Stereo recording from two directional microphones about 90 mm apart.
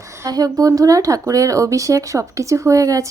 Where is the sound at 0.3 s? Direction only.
45° right (ahead or behind).